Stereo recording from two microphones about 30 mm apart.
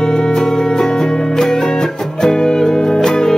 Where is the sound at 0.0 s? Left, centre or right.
Left.